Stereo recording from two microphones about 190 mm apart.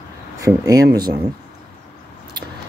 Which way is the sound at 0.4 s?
15° right (ahead or behind).